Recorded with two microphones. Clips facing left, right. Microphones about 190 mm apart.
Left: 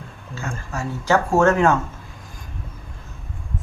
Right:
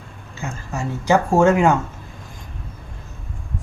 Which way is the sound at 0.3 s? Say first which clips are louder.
Right 1 dB; 15° right (ahead or behind).